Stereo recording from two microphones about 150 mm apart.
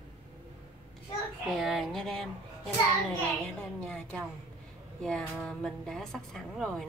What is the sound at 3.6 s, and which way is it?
A woman's voice, 5° left (ahead or behind).